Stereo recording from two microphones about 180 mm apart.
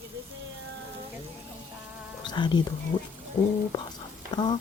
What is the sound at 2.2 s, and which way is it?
Speech, 25° left (ahead or behind).